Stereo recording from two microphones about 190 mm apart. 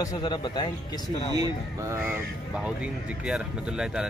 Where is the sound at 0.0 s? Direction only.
20° left (ahead or behind).